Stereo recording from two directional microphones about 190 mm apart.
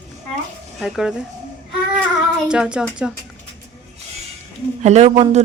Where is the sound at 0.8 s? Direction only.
Centre (ahead or behind).